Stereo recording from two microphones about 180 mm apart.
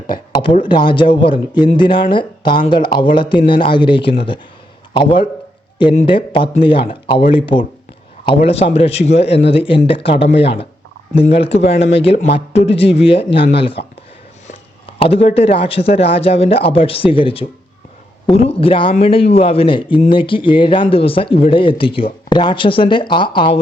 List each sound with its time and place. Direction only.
0.6 s a man's voice: 25° left (ahead or behind)
14.9 s a man's voice: 30° left (ahead or behind)